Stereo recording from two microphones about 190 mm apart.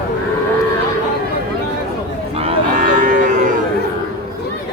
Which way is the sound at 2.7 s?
45° right (ahead or behind).